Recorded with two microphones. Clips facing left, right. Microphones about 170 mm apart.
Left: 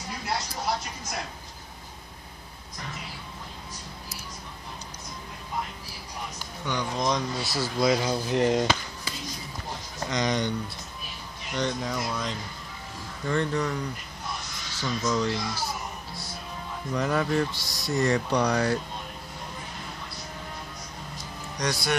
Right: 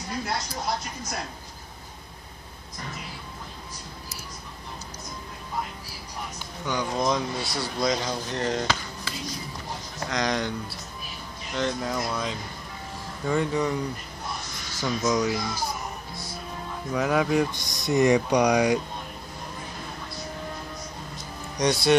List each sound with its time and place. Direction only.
6.6 s speech: 10° right (ahead or behind); by 9.1 s 15° left (ahead or behind)
10.0 s speech: centre (ahead or behind)
14.8 s speech: 10° right (ahead or behind)
16.9 s speech: 5° right (ahead or behind)
21.5 s speech: 20° right (ahead or behind)